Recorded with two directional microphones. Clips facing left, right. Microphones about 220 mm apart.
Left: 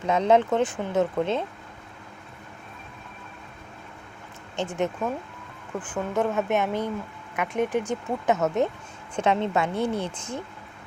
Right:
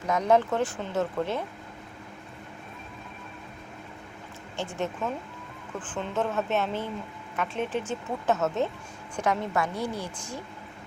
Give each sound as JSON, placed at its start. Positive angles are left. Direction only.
{"t": 0.1, "sound": "speech", "side_deg": 25}
{"t": 4.5, "sound": "speech", "side_deg": 20}